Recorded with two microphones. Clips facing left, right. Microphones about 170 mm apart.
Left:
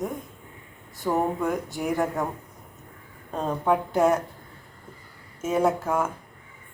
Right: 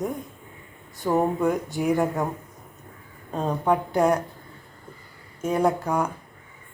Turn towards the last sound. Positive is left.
turn(degrees=0)  # may be behind; listen again after turning